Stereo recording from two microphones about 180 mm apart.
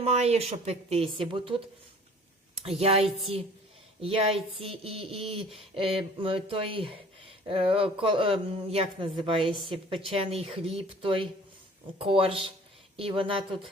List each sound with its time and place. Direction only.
0.0 s a woman's voice: 35° right (ahead or behind)
2.6 s a woman's voice: 35° right (ahead or behind)